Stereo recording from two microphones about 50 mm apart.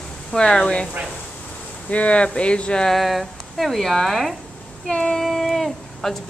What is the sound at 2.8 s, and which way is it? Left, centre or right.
Speech, centre.